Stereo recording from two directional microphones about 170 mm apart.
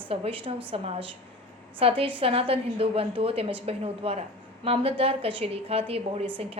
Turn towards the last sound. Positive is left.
turn(degrees=-35)  # may be behind; listen again after turning